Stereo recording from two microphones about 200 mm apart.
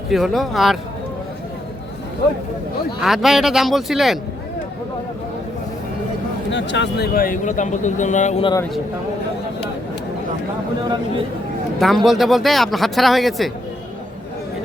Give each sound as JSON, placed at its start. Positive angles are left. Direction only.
{"t": 0.1, "sound": "speech", "side_deg": 0}
{"t": 3.0, "sound": "speech", "side_deg": 0}
{"t": 6.5, "sound": "speech", "side_deg": 65}
{"t": 12.0, "sound": "speech", "side_deg": 0}